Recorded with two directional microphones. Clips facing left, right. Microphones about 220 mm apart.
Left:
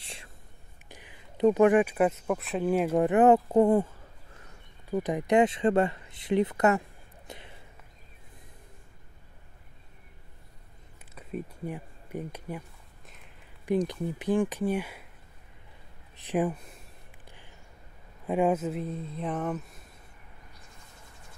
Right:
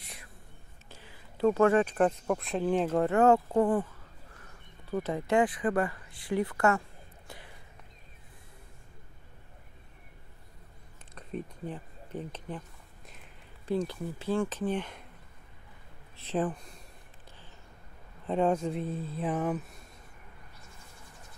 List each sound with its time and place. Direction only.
0.0 s whispering: 30° left (ahead or behind)
0.8 s speech: 15° left (ahead or behind)
4.9 s speech: 15° left (ahead or behind)
7.2 s a sound: 20° left (ahead or behind)
11.1 s a sound: 10° left (ahead or behind)
13.7 s speech: 15° left (ahead or behind)
16.2 s speech: 15° left (ahead or behind)
18.2 s speech: 10° left (ahead or behind)